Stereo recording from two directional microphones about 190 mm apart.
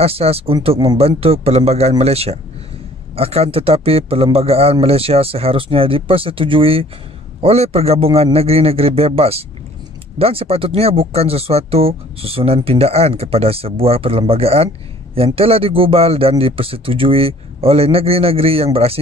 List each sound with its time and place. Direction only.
0.0 s speech: 30° right (ahead or behind)